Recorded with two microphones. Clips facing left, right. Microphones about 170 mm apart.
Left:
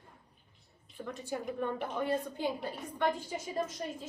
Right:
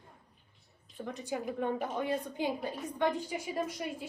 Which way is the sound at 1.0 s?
20° right (ahead or behind).